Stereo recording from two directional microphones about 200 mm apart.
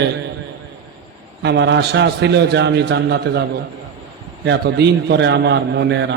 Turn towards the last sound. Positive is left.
turn(degrees=-60)  # may be behind; listen again after turning